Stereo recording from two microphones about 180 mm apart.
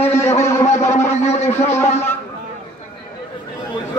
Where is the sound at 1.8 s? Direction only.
15° left (ahead or behind).